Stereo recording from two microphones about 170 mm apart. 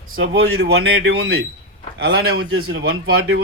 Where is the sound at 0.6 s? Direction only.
85° right.